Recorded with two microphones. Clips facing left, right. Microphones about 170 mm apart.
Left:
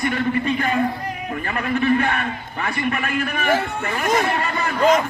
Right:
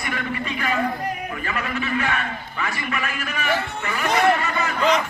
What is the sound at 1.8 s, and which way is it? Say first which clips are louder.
A man's voice: left 8 dB; 50° left (ahead or behind).